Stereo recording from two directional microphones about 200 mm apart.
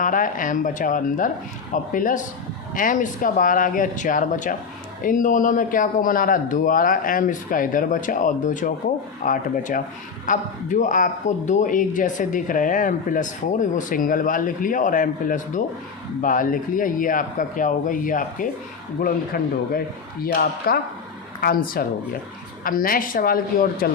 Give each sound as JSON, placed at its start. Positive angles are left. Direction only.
{"t": 0.0, "sound": "a man's voice", "side_deg": 40}